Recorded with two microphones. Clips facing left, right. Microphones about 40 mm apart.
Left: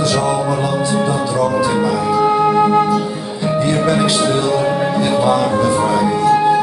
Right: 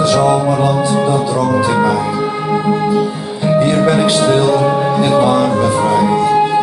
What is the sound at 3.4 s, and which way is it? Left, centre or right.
Music, centre.